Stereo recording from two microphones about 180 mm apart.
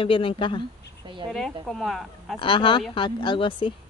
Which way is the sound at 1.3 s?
Centre (ahead or behind).